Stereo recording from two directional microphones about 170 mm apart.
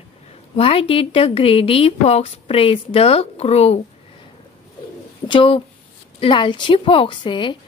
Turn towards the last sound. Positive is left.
turn(degrees=30)  # may be behind; listen again after turning